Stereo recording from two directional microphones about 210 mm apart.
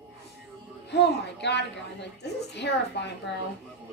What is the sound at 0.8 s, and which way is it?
A woman's voice, 55° left (ahead or behind).